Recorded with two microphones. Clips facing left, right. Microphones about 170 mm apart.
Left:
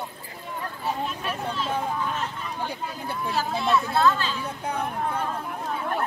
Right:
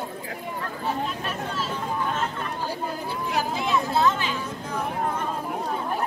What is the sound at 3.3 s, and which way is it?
Chatter, 15° right (ahead or behind).